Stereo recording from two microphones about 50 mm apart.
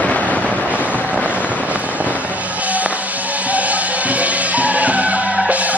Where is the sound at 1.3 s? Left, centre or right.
Right.